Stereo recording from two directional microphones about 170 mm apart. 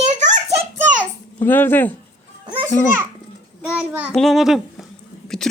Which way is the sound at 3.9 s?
10° right (ahead or behind).